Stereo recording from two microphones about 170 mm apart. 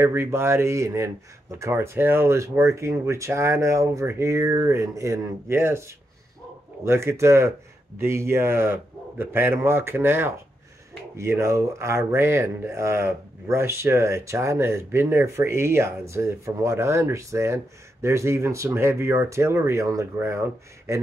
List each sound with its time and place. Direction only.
0.0 s speech: 15° right (ahead or behind)